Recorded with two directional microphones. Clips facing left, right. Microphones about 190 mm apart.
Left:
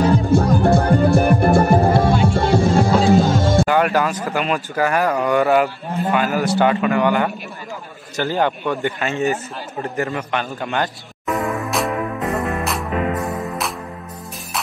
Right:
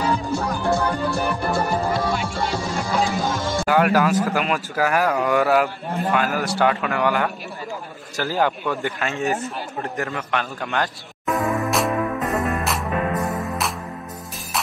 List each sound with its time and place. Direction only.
0.0 s music: 55° left (ahead or behind)
2.8 s music: 30° left (ahead or behind)
3.3 s music: 55° left (ahead or behind)
3.6 s a man's voice: 5° right (ahead or behind)
12.3 s music: centre (ahead or behind)